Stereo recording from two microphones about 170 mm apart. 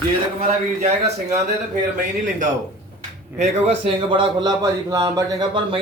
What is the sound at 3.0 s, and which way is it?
Speech, 40° right (ahead or behind).